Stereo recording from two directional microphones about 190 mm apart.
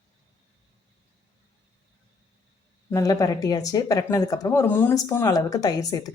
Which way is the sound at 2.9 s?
20° left (ahead or behind).